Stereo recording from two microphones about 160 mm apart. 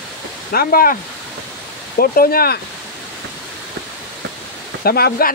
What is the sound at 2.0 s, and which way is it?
Speech, 70° left (ahead or behind).